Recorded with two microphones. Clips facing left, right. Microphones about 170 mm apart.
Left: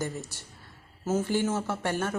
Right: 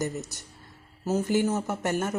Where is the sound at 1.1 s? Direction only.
15° right (ahead or behind).